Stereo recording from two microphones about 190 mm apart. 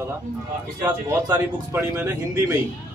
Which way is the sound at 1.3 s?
15° right (ahead or behind).